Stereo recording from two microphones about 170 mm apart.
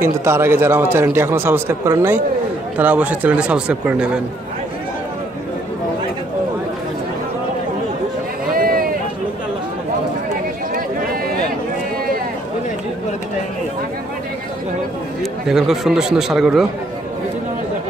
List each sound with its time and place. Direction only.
0.0 s a man's voice: 15° right (ahead or behind)
8.5 s run: 60° right (ahead or behind)
15.4 s speech: centre (ahead or behind)